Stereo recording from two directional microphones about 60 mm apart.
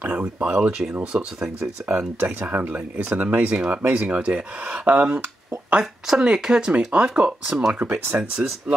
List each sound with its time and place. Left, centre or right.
0.0 s speech: right
1.8 s speech: centre
2.1 s speech: right; by 7.7 s centre
7.8 s speech: right
8.2 s speech: centre